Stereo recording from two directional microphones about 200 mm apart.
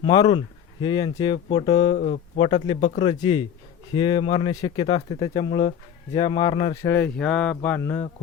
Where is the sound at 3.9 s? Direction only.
25° left (ahead or behind).